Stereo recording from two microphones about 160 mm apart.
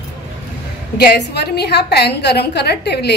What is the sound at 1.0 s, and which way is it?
A woman's voice, 90° left.